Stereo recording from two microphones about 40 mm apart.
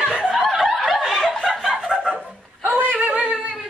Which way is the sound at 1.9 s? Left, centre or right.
Centre.